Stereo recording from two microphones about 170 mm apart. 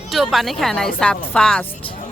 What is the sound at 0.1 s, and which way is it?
Speech, centre (ahead or behind).